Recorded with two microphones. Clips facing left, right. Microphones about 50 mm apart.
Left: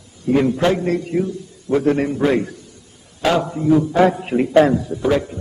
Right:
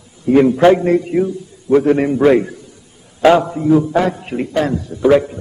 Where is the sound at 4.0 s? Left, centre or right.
Centre.